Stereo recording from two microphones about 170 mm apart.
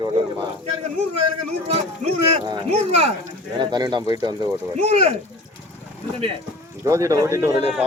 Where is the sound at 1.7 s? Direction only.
35° right (ahead or behind).